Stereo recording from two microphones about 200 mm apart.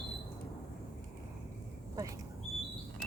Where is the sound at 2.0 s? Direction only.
15° right (ahead or behind).